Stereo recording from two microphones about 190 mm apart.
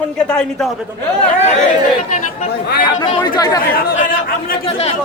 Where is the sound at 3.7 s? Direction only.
50° left (ahead or behind).